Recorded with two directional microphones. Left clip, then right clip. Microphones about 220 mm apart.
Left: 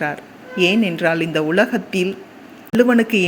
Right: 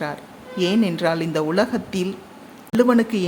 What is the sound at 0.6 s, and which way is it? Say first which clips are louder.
A man's voice: left 3 dB; 5° right (ahead or behind).